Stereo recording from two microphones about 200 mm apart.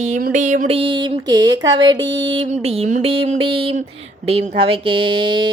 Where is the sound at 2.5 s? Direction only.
35° right (ahead or behind).